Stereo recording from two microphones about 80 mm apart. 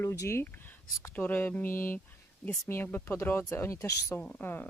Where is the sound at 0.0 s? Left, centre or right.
Left.